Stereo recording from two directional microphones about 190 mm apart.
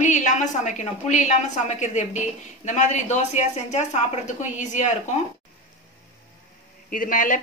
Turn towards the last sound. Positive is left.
turn(degrees=45)  # may be behind; listen again after turning